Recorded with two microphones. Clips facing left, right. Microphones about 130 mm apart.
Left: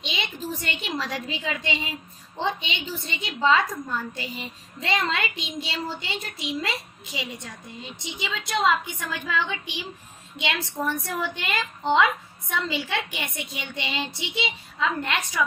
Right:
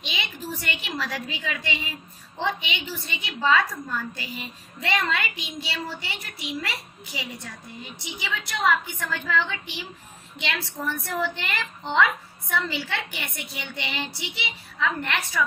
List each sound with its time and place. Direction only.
0.0 s a woman's voice: 20° left (ahead or behind)